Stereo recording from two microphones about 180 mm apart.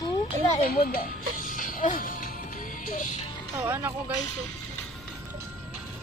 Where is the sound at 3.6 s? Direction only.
10° right (ahead or behind).